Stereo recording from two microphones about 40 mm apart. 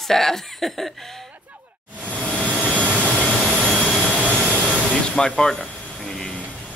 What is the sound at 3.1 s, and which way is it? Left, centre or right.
Jet engine, left.